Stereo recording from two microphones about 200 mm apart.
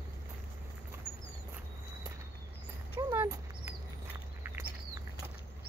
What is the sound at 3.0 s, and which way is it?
Dog, 15° right (ahead or behind).